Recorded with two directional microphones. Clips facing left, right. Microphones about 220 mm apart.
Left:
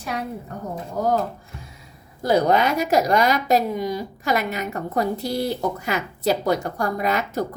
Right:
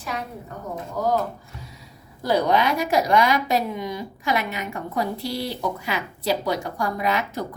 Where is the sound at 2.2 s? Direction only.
45° left (ahead or behind).